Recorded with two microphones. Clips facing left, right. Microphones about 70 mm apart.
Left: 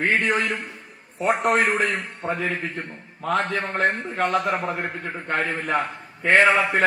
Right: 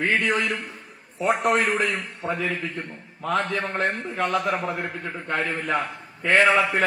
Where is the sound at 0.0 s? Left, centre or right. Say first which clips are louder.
Left 1 dB; left.